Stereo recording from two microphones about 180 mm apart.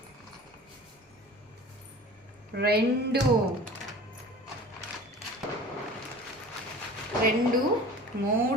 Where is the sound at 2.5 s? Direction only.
60° right (ahead or behind).